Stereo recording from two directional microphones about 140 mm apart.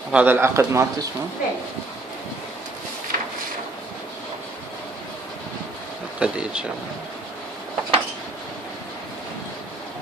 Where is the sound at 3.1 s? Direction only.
75° right (ahead or behind).